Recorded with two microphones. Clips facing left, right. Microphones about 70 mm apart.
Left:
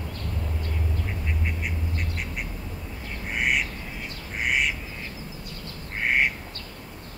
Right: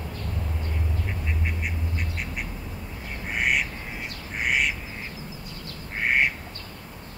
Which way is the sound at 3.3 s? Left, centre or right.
Centre.